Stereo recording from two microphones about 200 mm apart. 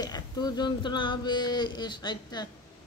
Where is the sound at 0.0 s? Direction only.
20° left (ahead or behind).